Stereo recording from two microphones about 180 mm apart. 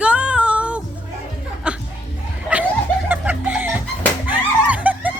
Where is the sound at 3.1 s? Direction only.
10° right (ahead or behind).